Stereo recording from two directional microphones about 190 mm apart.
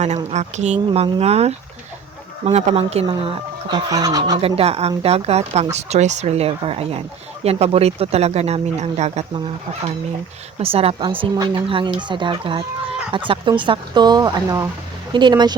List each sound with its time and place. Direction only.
0.0 s speech: 35° right (ahead or behind); by 4.4 s 20° right (ahead or behind)
4.4 s speech: 30° right (ahead or behind)
10.6 s speech: 30° right (ahead or behind)